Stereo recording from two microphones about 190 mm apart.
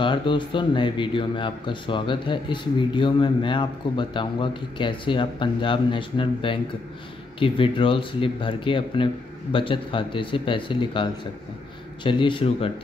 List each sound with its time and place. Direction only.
0.0 s speech: 25° left (ahead or behind)